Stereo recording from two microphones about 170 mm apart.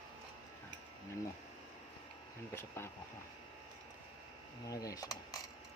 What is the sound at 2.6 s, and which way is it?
Speech, 15° left (ahead or behind).